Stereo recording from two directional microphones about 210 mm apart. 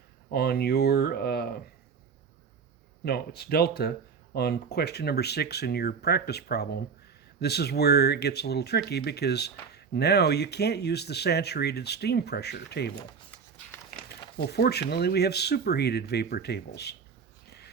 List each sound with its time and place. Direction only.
0.3 s speech: 50° left (ahead or behind)
3.0 s speech: 50° left (ahead or behind)
14.3 s speech: 50° left (ahead or behind)